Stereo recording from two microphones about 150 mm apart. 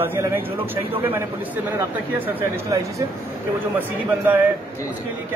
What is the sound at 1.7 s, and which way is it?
Speech, 20° right (ahead or behind).